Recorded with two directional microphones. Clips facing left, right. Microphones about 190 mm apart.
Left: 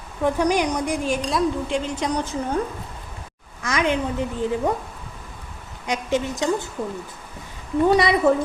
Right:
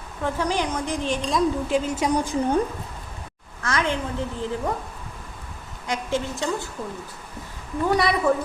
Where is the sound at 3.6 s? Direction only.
15° left (ahead or behind).